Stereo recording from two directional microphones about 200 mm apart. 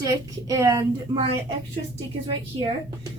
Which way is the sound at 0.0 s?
15° right (ahead or behind).